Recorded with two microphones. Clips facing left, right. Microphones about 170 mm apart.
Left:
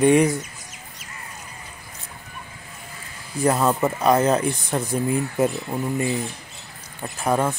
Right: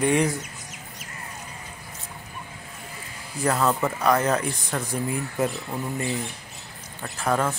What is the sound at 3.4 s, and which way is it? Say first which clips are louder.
Speech: left 3 dB; 20° left (ahead or behind).